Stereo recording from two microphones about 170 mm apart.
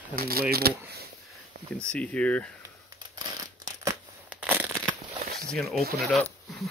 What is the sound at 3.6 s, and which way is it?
Scissors, 20° right (ahead or behind).